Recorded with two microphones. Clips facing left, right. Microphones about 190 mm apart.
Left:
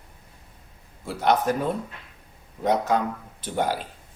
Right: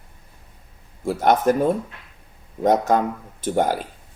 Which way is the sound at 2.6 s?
45° right (ahead or behind).